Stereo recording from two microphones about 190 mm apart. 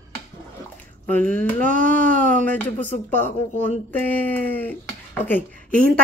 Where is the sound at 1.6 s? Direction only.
45° right (ahead or behind).